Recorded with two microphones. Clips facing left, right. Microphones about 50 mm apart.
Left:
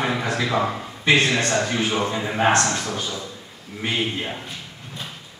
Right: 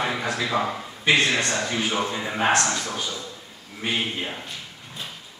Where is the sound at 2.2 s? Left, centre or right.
Centre.